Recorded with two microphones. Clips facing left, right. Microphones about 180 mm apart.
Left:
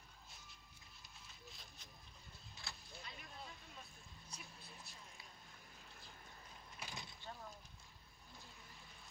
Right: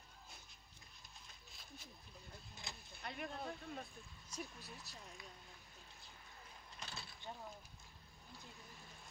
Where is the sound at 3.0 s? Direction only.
60° right (ahead or behind).